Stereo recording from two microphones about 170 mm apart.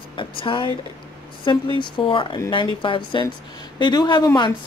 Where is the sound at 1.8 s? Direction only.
30° left (ahead or behind).